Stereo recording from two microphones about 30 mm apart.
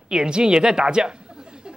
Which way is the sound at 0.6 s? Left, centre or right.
Right.